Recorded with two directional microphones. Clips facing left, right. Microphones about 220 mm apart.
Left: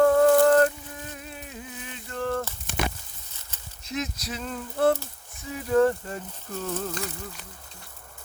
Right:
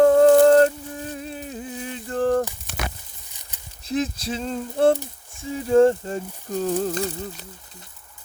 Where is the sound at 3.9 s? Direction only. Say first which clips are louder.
Right 7 dB; 30° right (ahead or behind).